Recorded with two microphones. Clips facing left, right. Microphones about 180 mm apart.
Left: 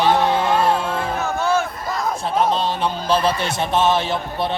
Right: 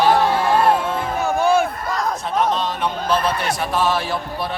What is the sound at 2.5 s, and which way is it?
Speech, 30° left (ahead or behind).